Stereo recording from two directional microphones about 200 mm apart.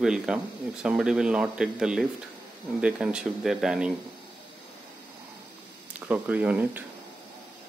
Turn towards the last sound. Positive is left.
turn(degrees=-5)  # may be behind; listen again after turning